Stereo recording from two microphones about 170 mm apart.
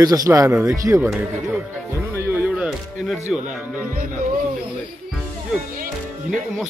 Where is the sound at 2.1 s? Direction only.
15° right (ahead or behind).